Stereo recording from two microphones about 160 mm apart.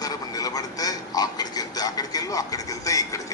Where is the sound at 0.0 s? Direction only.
20° left (ahead or behind).